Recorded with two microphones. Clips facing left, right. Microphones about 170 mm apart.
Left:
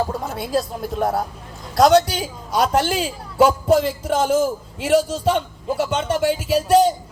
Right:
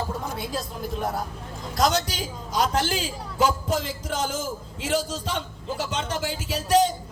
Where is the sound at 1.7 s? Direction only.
65° left (ahead or behind).